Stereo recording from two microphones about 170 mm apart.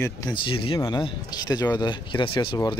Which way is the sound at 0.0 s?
25° left (ahead or behind).